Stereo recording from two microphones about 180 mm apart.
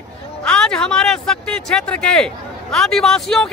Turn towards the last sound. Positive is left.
turn(degrees=5)  # may be behind; listen again after turning